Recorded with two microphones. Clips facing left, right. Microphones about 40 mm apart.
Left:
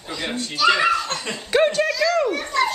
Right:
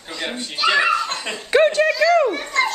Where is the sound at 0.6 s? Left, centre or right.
Centre.